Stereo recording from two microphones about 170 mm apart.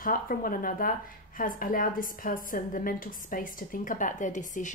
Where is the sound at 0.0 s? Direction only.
55° left (ahead or behind).